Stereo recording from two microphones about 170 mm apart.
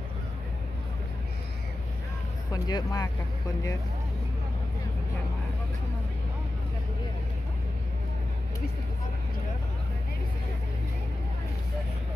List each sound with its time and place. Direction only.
2.5 s speech: 20° left (ahead or behind)